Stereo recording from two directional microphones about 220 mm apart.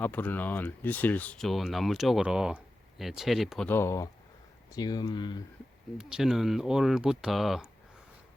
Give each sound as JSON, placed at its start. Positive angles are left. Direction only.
{"t": 0.0, "sound": "speech", "side_deg": 10}
{"t": 6.0, "sound": "speech", "side_deg": -5}